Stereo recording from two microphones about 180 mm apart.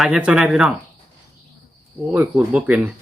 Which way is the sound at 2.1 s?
10° right (ahead or behind).